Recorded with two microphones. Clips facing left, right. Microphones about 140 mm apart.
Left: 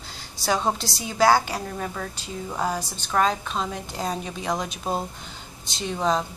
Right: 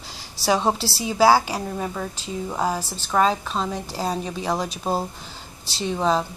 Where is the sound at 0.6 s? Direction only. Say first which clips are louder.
Right 3 dB; 35° right (ahead or behind).